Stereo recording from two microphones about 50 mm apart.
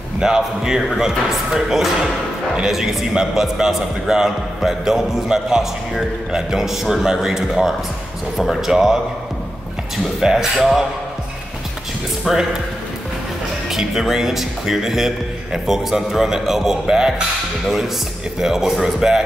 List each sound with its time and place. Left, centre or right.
0.2 s a man's voice: centre
10.2 s a man's voice: centre
12.3 s a man's voice: centre
13.7 s a man's voice: centre
18.4 s a man's voice: centre